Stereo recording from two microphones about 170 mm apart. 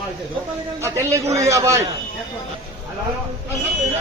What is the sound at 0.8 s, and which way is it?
A man's voice, 15° right (ahead or behind).